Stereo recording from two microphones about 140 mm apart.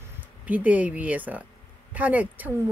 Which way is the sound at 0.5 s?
10° right (ahead or behind).